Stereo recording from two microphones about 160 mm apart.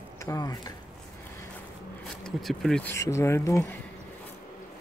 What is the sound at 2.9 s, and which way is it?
Speech, 20° left (ahead or behind).